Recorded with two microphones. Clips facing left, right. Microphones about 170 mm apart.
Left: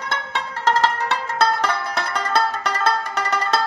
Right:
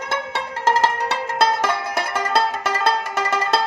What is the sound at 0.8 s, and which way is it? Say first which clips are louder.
Music: even; 15° right (ahead or behind).